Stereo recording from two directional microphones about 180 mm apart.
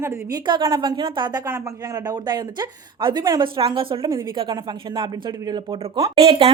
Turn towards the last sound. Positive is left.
turn(degrees=-30)  # may be behind; listen again after turning